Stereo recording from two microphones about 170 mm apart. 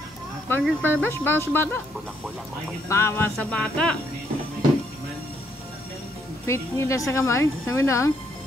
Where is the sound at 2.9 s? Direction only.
15° left (ahead or behind).